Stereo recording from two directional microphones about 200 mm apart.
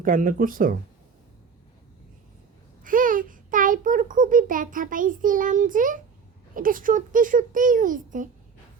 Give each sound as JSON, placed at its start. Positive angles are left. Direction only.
{"t": 0.0, "sound": "speech", "side_deg": -45}
{"t": 2.8, "sound": "a child's voice", "side_deg": -45}